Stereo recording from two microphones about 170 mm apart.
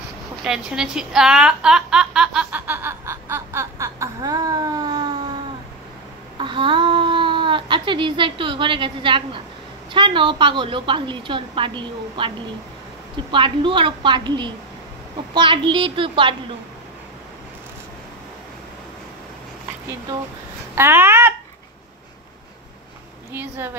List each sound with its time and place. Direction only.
0.4 s speech: 5° right (ahead or behind); by 5.1 s 25° right (ahead or behind)
6.3 s a woman's voice: 30° right (ahead or behind)
13.3 s a woman's voice: 30° right (ahead or behind)
20.7 s a sound: 15° right (ahead or behind)
23.3 s speech: 15° right (ahead or behind)